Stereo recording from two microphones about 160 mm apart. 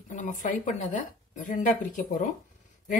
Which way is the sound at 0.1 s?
50° left (ahead or behind).